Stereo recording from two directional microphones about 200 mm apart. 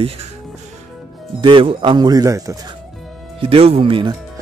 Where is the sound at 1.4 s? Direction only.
25° right (ahead or behind).